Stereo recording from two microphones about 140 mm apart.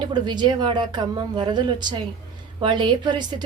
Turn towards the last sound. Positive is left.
turn(degrees=-35)  # may be behind; listen again after turning